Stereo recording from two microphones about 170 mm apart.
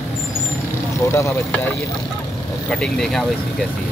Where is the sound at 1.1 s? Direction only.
15° left (ahead or behind).